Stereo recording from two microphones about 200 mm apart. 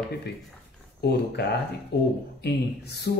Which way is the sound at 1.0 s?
55° left (ahead or behind).